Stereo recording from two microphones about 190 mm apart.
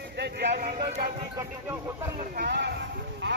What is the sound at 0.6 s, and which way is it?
Speech, 40° right (ahead or behind).